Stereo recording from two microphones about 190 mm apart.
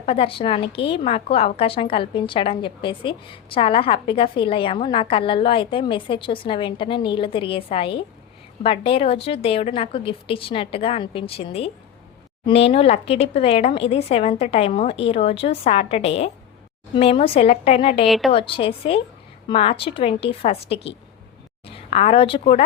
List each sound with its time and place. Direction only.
0.0 s a woman's voice: 30° left (ahead or behind)